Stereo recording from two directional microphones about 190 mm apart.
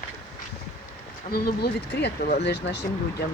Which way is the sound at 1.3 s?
55° left (ahead or behind).